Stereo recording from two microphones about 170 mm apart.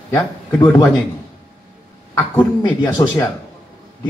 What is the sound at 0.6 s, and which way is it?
Speech, 10° left (ahead or behind).